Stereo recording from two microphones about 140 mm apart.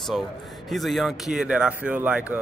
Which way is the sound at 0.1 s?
Centre (ahead or behind).